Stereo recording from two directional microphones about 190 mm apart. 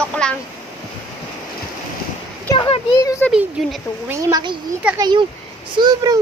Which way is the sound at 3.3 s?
5° right (ahead or behind).